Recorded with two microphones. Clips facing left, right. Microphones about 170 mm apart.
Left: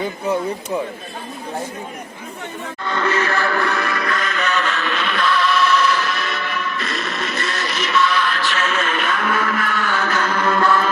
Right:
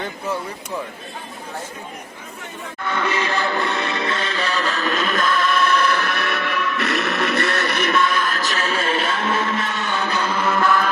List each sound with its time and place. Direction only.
2.9 s music: 15° right (ahead or behind)